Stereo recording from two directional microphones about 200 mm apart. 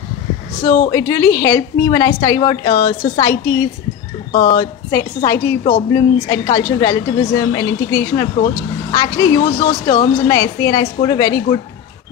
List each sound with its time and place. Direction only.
0.7 s a woman's voice: 15° left (ahead or behind)